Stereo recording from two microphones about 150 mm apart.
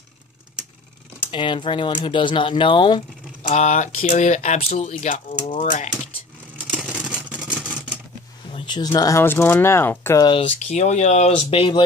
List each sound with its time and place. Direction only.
1.3 s speech: 30° left (ahead or behind)
3.4 s speech: 50° left (ahead or behind)
6.7 s vehicle: centre (ahead or behind)
8.5 s speech: 35° left (ahead or behind); by 10.2 s 15° left (ahead or behind)
10.6 s speech: 50° left (ahead or behind)